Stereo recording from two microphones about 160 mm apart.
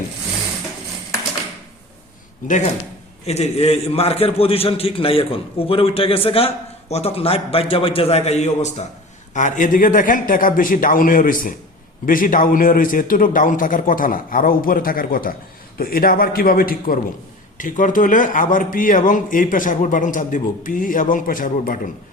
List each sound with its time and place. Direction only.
2.4 s speech: 55° left (ahead or behind)
3.2 s a man's voice: 40° left (ahead or behind); by 21.8 s 60° left (ahead or behind)